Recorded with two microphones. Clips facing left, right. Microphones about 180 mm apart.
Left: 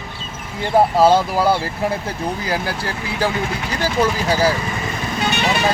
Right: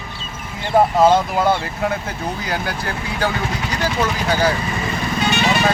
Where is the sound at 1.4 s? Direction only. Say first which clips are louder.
Left 1 dB; 30° left (ahead or behind).